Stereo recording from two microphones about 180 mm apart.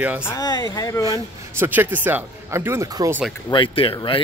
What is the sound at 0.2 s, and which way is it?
Speech, 15° left (ahead or behind).